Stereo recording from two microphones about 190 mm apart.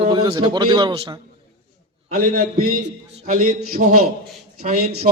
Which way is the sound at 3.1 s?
35° right (ahead or behind).